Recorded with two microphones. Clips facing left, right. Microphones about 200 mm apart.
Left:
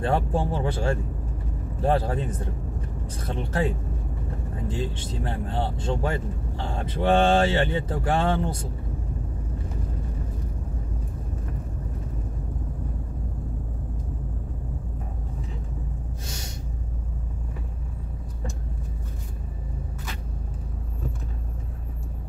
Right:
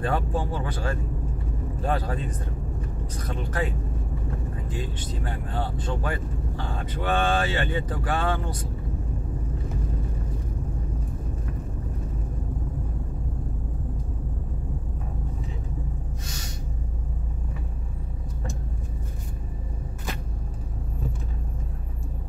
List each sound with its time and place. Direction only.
0.0 s speech: 25° left (ahead or behind)
4.6 s speech: 25° left (ahead or behind)